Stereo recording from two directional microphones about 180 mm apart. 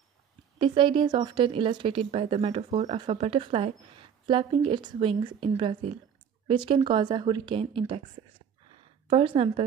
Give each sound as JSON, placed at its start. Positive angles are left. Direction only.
{"t": 0.6, "sound": "speech", "side_deg": -30}
{"t": 9.1, "sound": "a woman's voice", "side_deg": -30}